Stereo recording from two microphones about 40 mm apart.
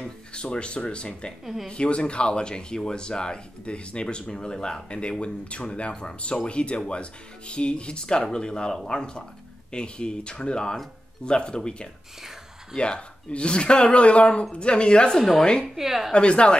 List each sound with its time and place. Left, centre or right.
0.0 s speech: left
1.4 s speech: centre
1.7 s speech: left
15.7 s a woman's voice: centre
16.1 s speech: left